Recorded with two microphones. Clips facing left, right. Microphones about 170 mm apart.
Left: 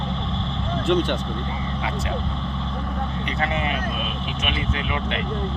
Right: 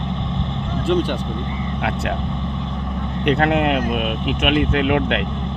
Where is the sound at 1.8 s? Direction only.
60° right (ahead or behind).